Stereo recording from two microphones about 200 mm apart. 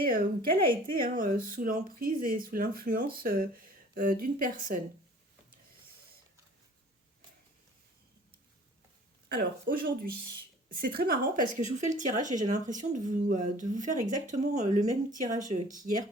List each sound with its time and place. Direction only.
0.1 s speech: 45° right (ahead or behind)
9.3 s speech: 50° right (ahead or behind)